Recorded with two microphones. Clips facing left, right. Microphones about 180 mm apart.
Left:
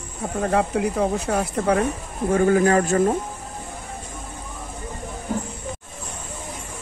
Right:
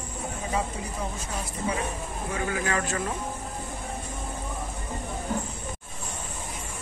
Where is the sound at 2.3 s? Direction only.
45° left (ahead or behind).